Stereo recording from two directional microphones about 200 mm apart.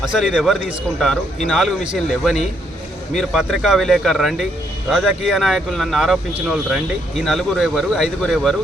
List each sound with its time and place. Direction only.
0.2 s speech: centre (ahead or behind)